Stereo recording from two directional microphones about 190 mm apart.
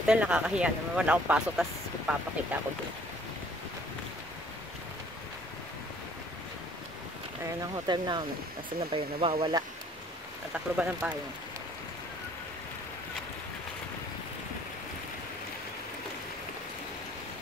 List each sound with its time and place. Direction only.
0.0 s speech: 5° right (ahead or behind)
7.4 s speech: 20° right (ahead or behind)
10.5 s speech: 5° right (ahead or behind)